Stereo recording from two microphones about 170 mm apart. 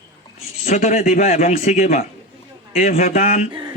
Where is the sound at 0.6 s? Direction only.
40° left (ahead or behind).